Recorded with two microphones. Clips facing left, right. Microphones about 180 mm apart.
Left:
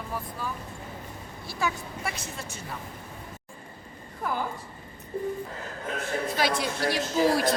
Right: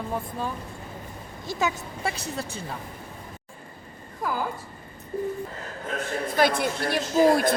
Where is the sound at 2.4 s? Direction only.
30° right (ahead or behind).